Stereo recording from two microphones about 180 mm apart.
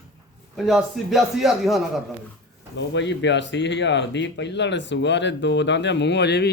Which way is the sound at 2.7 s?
80° left.